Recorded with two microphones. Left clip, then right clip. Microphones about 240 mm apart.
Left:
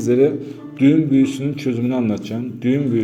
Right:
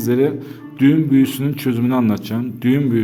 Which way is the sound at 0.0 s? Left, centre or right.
Centre.